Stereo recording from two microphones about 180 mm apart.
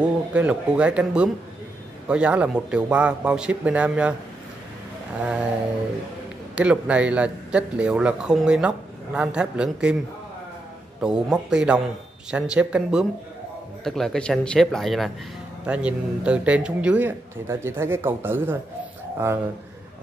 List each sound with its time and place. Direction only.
0.0 s speech: 5° right (ahead or behind)
5.2 s speech: 5° right (ahead or behind)
6.5 s speech: 5° right (ahead or behind)
11.0 s speech: 5° right (ahead or behind)